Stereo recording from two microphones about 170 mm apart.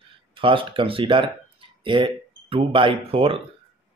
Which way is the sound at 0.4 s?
30° right (ahead or behind).